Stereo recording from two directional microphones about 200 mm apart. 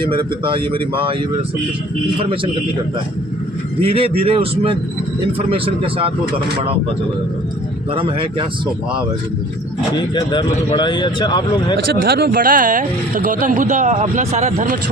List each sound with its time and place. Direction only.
0.2 s a man's voice: 25° right (ahead or behind)
3.8 s a man's voice: 30° right (ahead or behind)
7.9 s a man's voice: 25° right (ahead or behind)
9.9 s speech: 20° left (ahead or behind)
12.0 s speech: 50° right (ahead or behind)